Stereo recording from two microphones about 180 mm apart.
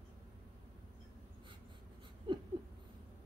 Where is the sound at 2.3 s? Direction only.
25° right (ahead or behind).